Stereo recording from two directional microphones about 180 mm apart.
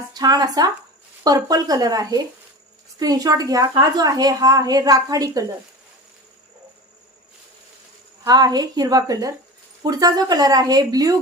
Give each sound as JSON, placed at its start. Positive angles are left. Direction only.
{"t": 0.1, "sound": "a woman's voice", "side_deg": -20}
{"t": 8.2, "sound": "a woman's voice", "side_deg": -20}